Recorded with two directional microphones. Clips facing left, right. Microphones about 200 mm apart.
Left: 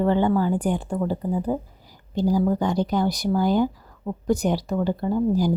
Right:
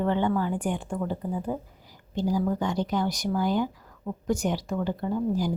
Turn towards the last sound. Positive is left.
turn(degrees=35)  # may be behind; listen again after turning